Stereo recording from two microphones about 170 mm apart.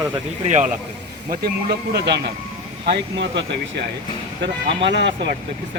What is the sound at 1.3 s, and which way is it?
Speech, 65° right (ahead or behind).